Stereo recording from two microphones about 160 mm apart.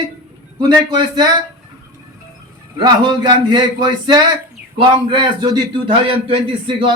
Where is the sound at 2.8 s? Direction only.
25° right (ahead or behind).